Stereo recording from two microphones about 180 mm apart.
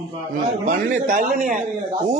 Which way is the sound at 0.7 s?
50° right (ahead or behind).